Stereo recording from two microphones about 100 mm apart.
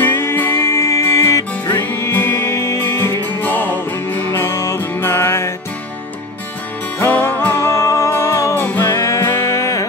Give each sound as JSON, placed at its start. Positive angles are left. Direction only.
{"t": 0.0, "sound": "music", "side_deg": 20}
{"t": 7.0, "sound": "music", "side_deg": 20}
{"t": 8.9, "sound": "music", "side_deg": 30}